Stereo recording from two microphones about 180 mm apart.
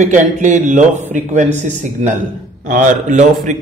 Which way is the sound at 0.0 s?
45° right (ahead or behind).